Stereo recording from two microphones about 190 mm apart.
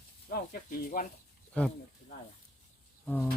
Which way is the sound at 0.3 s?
45° left (ahead or behind).